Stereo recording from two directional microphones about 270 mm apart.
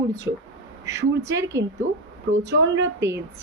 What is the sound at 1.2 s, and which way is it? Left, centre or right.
Speech, centre.